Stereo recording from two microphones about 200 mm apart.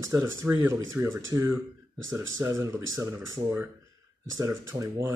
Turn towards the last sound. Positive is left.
turn(degrees=-15)  # may be behind; listen again after turning